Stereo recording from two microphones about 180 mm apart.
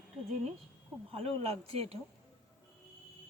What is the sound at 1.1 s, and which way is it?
Speech, 35° right (ahead or behind).